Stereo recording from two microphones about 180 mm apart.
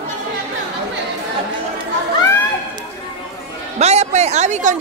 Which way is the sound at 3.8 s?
40° right (ahead or behind).